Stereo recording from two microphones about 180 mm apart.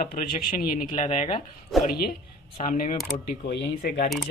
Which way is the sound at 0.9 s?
40° left (ahead or behind).